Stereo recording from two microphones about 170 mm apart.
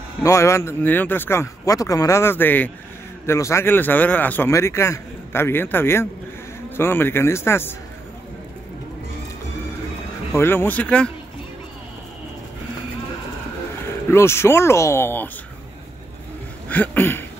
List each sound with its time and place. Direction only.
0.2 s speech: 15° left (ahead or behind)
10.3 s speech: 15° left (ahead or behind)
14.1 s speech: 15° left (ahead or behind)
16.6 s speech: 10° left (ahead or behind)